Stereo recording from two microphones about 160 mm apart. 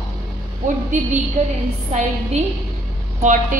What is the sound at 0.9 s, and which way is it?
A woman's voice, 50° right (ahead or behind).